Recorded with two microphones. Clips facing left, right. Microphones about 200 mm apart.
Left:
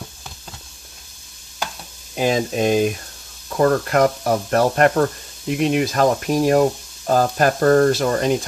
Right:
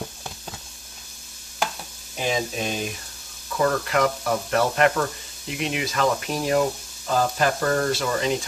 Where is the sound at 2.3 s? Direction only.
50° left (ahead or behind).